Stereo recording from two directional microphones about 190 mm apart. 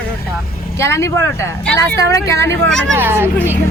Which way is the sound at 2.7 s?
5° left (ahead or behind).